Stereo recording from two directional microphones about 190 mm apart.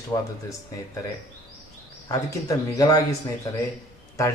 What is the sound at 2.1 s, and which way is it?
Speech, 20° left (ahead or behind).